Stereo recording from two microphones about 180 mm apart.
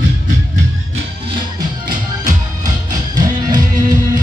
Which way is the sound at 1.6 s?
20° right (ahead or behind).